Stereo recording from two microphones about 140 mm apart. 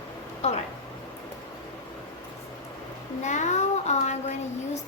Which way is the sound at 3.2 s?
60° left (ahead or behind).